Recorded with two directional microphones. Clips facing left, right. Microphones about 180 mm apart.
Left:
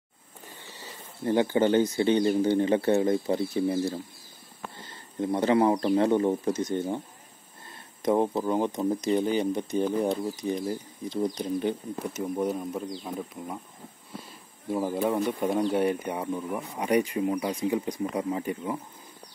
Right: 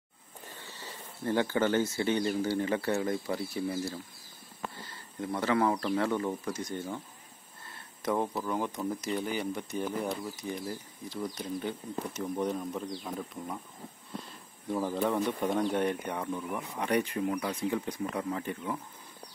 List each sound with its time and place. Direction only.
1.2 s speech: 20° left (ahead or behind)
8.0 s speech: 25° left (ahead or behind)
12.1 s speech: 5° left (ahead or behind)
14.7 s speech: 15° left (ahead or behind)